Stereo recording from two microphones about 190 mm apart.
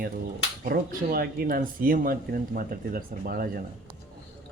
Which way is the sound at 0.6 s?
55° right (ahead or behind).